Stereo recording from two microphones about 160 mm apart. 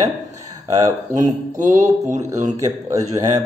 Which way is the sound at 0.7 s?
20° right (ahead or behind).